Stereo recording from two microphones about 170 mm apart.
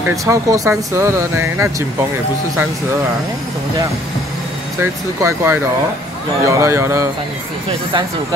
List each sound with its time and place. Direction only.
0.1 s speech: 20° right (ahead or behind)
5.2 s speech: 15° right (ahead or behind)